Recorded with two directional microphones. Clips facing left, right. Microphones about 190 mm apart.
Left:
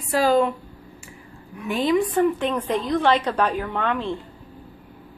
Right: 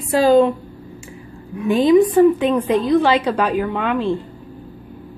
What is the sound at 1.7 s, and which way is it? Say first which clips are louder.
Speech: right 8 dB; 15° right (ahead or behind).